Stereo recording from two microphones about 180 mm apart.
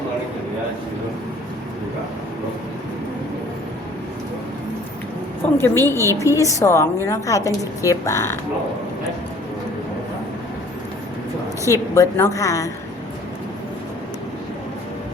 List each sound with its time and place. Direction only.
5.5 s a woman's voice: 15° left (ahead or behind)
11.7 s a woman's voice: 15° left (ahead or behind)